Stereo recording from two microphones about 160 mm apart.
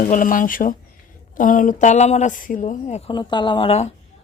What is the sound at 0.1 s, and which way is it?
Speech, 55° left (ahead or behind).